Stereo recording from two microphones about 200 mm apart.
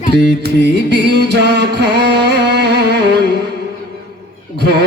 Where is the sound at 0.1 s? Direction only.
55° right (ahead or behind).